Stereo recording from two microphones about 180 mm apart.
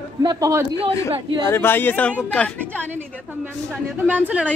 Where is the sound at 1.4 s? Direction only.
10° left (ahead or behind).